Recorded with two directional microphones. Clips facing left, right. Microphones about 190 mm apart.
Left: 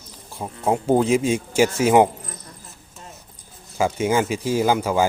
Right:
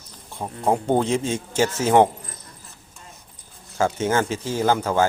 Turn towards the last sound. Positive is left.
turn(degrees=10)  # may be behind; listen again after turning